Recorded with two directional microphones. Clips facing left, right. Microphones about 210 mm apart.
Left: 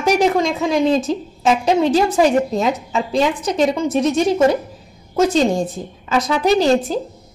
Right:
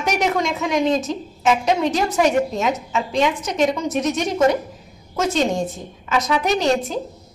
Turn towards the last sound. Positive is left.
turn(degrees=35)  # may be behind; listen again after turning